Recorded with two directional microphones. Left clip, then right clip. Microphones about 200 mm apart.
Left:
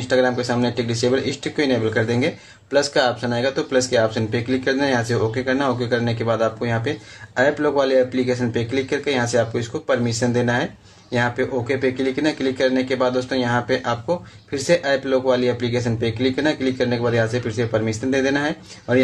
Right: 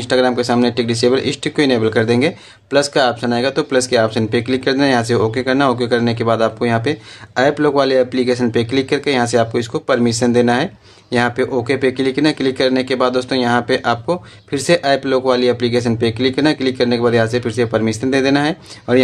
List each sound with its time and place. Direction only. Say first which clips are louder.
0.1 s speech: right 4 dB; 40° right (ahead or behind)